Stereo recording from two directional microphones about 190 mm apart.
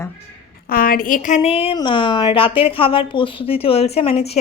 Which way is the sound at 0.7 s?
50° left (ahead or behind).